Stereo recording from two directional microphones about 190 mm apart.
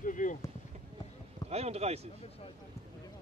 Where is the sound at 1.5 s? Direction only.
35° right (ahead or behind).